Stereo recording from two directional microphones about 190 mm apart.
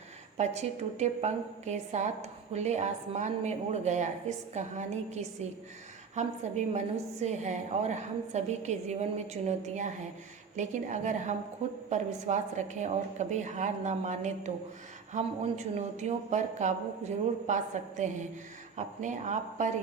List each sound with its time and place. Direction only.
0.3 s a woman's voice: 35° right (ahead or behind)